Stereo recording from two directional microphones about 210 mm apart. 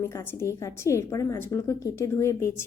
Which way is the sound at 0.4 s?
15° left (ahead or behind).